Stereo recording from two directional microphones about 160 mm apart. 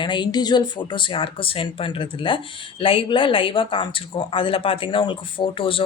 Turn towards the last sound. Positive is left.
turn(degrees=35)  # may be behind; listen again after turning